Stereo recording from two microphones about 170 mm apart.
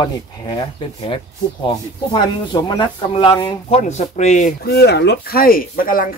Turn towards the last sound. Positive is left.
turn(degrees=55)  # may be behind; listen again after turning